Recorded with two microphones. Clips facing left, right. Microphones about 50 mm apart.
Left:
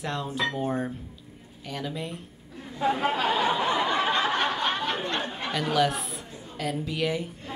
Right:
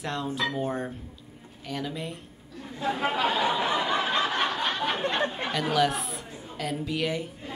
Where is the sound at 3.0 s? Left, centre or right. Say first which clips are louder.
Right 2 dB; centre.